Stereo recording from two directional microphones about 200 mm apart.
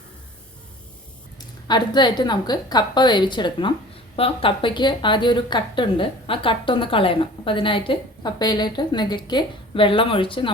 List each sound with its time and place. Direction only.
1.4 s a woman's voice: 20° left (ahead or behind)